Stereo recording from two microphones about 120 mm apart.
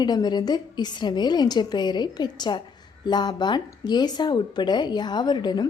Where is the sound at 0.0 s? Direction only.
35° left (ahead or behind).